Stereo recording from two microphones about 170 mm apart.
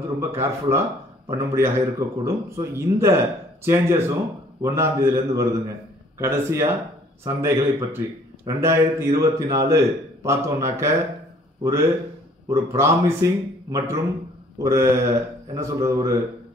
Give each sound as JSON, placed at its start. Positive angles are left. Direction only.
{"t": 0.2, "sound": "a man's voice", "side_deg": -15}
{"t": 12.5, "sound": "a man's voice", "side_deg": -15}